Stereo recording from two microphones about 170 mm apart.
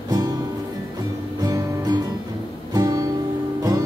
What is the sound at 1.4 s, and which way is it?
Music, 20° right (ahead or behind).